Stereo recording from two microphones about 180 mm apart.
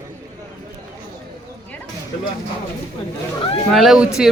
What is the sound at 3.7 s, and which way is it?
Speech, centre (ahead or behind).